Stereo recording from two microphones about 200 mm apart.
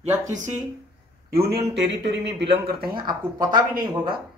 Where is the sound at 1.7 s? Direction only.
60° right (ahead or behind).